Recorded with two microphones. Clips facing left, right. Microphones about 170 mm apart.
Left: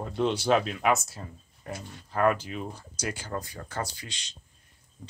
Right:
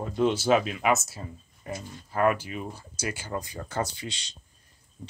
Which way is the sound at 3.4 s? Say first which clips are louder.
Right 3 dB; 20° right (ahead or behind).